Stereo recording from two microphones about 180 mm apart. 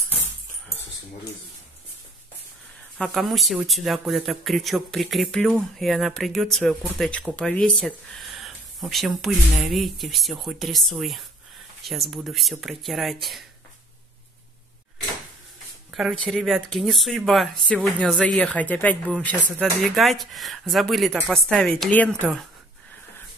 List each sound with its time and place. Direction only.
3.0 s speech: centre (ahead or behind)
15.9 s speech: centre (ahead or behind)